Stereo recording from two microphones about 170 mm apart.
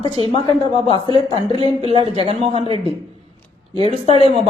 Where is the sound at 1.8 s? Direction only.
35° right (ahead or behind).